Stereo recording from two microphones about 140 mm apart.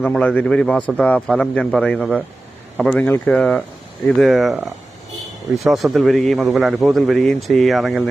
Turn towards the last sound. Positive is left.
turn(degrees=0)  # may be behind; listen again after turning